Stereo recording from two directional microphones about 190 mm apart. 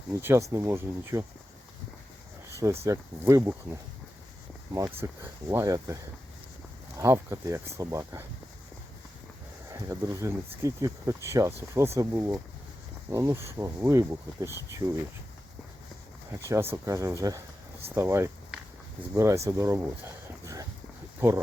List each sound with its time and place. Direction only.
0.1 s speech: 15° right (ahead or behind)
2.5 s speech: 15° right (ahead or behind)
9.7 s speech: 15° right (ahead or behind)
16.5 s speech: 15° right (ahead or behind)
17.9 s a sound: 10° right (ahead or behind)
19.1 s speech: 15° right (ahead or behind)
20.4 s dog: 15° right (ahead or behind)
21.2 s speech: 15° right (ahead or behind)